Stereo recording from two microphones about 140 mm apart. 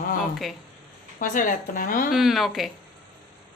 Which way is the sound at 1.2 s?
70° left (ahead or behind).